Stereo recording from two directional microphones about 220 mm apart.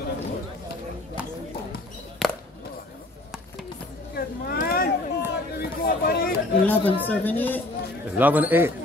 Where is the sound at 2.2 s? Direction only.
5° left (ahead or behind).